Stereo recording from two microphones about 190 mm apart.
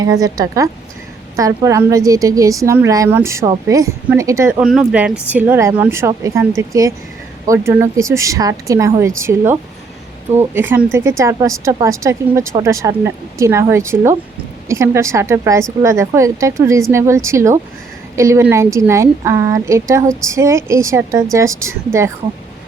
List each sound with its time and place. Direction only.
0.0 s a woman's voice: 20° right (ahead or behind)
4.6 s a woman's voice: 5° right (ahead or behind)